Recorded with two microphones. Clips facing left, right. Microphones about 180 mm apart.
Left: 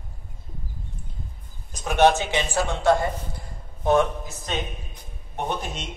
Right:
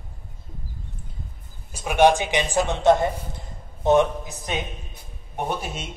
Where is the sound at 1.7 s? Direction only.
10° right (ahead or behind).